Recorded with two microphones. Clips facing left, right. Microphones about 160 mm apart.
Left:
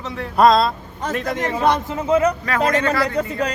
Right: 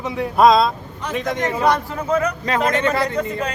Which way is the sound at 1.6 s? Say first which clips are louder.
Left 1 dB; 25° left (ahead or behind).